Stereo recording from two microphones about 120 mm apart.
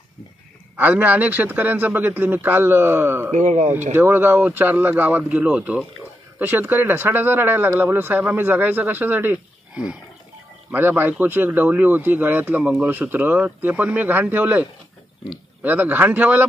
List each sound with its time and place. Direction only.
0.7 s speech: 15° right (ahead or behind)
3.3 s speech: 75° right (ahead or behind)
3.9 s speech: 20° right (ahead or behind)